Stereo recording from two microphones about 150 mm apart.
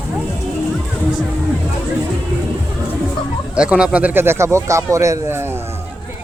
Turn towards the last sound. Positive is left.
turn(degrees=-20)  # may be behind; listen again after turning